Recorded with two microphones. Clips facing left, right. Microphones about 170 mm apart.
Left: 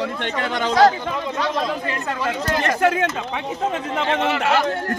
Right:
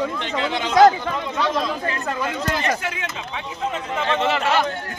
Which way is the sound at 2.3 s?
55° left (ahead or behind).